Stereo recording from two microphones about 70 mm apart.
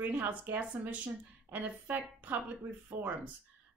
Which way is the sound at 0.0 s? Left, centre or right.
Right.